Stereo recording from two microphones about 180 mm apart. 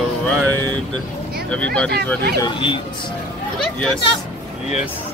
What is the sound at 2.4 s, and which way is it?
Speech, 25° left (ahead or behind).